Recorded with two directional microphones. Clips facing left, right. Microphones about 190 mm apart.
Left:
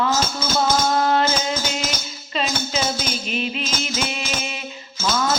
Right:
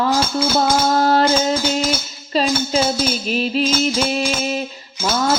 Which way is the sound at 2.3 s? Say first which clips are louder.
Right 7 dB; 35° right (ahead or behind).